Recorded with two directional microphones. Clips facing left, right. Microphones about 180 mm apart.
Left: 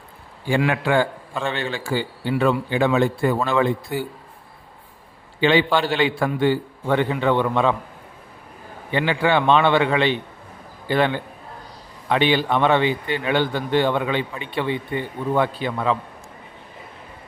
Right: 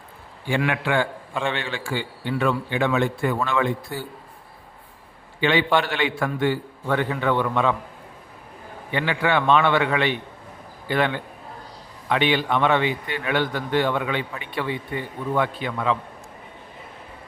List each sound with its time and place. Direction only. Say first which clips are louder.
0.4 s a man's voice: left 3 dB; 40° left (ahead or behind)
5.4 s a man's voice: left 2 dB; 30° left (ahead or behind)
8.9 s a man's voice: left 3 dB; 30° left (ahead or behind)